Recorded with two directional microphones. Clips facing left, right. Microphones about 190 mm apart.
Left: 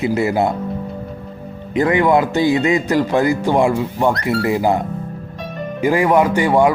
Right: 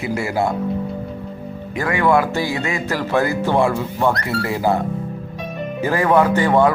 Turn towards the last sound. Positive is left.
turn(degrees=15)  # may be behind; listen again after turning